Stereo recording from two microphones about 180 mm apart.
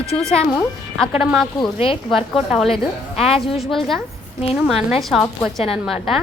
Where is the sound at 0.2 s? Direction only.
Centre (ahead or behind).